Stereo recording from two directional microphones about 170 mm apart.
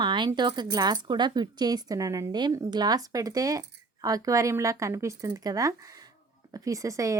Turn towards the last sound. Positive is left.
turn(degrees=-20)  # may be behind; listen again after turning